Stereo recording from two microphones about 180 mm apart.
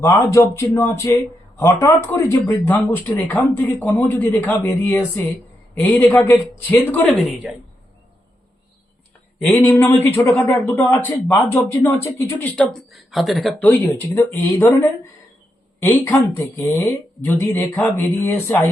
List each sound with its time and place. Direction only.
0.0 s speech: 15° left (ahead or behind)
7.4 s speech: 5° right (ahead or behind)
9.4 s speech: 10° left (ahead or behind)